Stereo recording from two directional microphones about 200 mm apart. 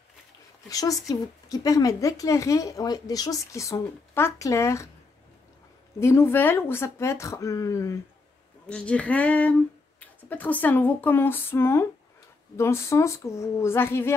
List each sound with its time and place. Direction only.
0.7 s speech: 15° left (ahead or behind)
5.9 s speech: 15° left (ahead or behind)